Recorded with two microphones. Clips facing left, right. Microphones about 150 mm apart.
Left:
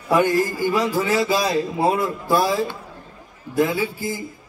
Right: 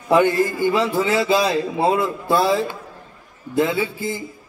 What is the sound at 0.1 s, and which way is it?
A man's voice, 25° right (ahead or behind).